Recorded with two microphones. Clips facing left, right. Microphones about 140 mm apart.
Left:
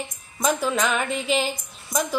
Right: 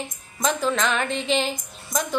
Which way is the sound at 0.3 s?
5° left (ahead or behind).